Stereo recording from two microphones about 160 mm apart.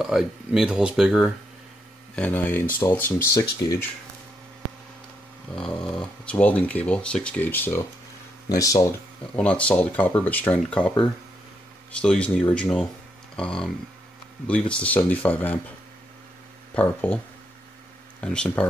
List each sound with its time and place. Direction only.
0.0 s speech: 5° right (ahead or behind)
2.1 s speech: 10° left (ahead or behind)
5.6 s speech: 5° left (ahead or behind); by 8.8 s 20° left (ahead or behind)
9.3 s speech: 10° left (ahead or behind)
12.0 s speech: 5° left (ahead or behind)
16.7 s speech: 10° left (ahead or behind)
18.2 s speech: 5° left (ahead or behind)